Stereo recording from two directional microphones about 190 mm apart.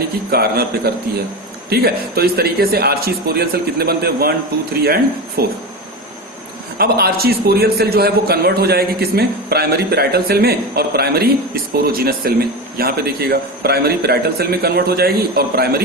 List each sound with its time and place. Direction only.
0.3 s a man's voice: 55° right (ahead or behind)
6.7 s a man's voice: 55° right (ahead or behind)